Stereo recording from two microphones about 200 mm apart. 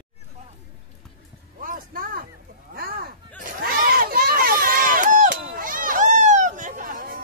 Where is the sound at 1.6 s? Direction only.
45° right (ahead or behind).